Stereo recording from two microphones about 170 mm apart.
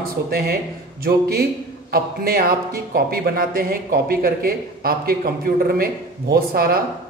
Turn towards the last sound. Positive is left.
turn(degrees=-60)  # may be behind; listen again after turning